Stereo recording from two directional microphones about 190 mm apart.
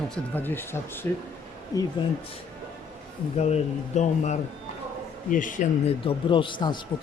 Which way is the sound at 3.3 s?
35° left (ahead or behind).